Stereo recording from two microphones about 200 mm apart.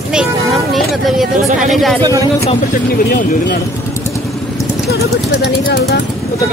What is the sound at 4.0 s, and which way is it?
Vehicle, 15° left (ahead or behind).